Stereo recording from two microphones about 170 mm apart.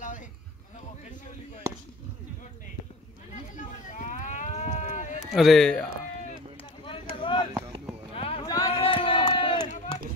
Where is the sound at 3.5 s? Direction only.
45° left (ahead or behind).